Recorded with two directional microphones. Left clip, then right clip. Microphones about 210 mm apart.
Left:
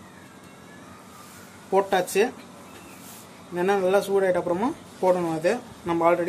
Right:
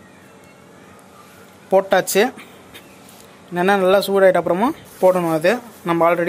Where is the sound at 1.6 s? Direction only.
45° right (ahead or behind).